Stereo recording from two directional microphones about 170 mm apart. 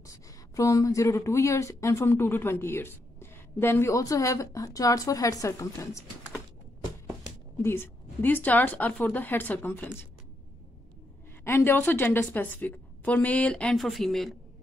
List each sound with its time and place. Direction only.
0.0 s speech: 20° left (ahead or behind)
7.6 s speech: 15° left (ahead or behind)
11.4 s speech: 15° left (ahead or behind)